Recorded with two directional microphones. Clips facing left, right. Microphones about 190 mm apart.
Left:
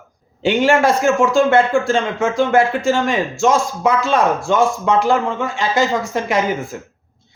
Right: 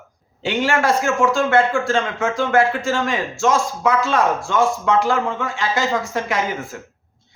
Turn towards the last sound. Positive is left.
turn(degrees=20)  # may be behind; listen again after turning